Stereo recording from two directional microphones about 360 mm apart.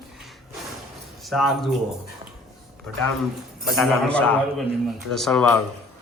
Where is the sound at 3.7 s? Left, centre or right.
Centre.